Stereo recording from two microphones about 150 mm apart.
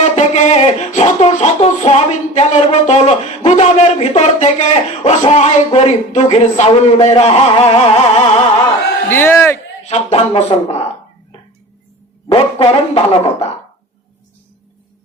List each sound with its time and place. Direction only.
0.0 s speech: 50° left (ahead or behind)
9.0 s speech: 15° left (ahead or behind)
9.8 s speech: 45° left (ahead or behind)
12.3 s speech: 35° left (ahead or behind)